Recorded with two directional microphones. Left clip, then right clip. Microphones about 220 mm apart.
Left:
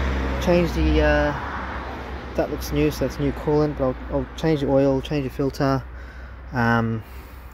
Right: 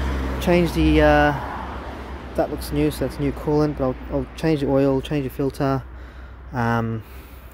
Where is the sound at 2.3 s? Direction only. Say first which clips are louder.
Right 1 dB; centre (ahead or behind).